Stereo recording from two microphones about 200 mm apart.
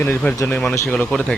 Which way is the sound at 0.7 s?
15° left (ahead or behind).